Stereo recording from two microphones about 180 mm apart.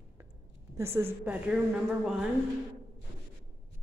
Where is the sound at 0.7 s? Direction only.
15° right (ahead or behind).